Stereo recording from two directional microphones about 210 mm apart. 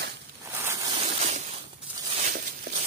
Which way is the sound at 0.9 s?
30° right (ahead or behind).